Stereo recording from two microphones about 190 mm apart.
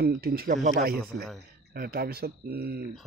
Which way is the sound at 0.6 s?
40° right (ahead or behind).